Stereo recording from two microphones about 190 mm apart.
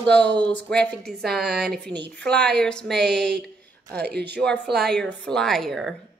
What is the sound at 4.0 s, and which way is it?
Speech, 60° right (ahead or behind).